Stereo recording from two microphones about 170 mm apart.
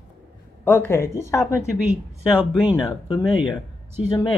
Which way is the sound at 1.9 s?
10° right (ahead or behind).